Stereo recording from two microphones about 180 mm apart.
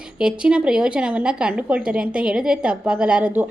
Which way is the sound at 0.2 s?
5° right (ahead or behind).